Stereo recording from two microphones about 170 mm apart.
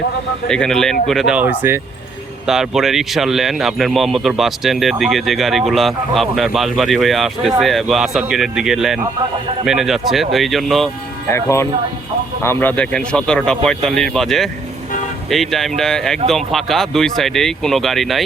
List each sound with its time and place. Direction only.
0.4 s speech: 5° left (ahead or behind)
11.3 s speech: 15° left (ahead or behind); by 18.2 s centre (ahead or behind)